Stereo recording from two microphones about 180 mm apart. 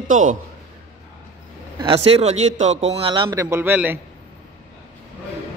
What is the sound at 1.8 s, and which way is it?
A man's voice, 30° right (ahead or behind).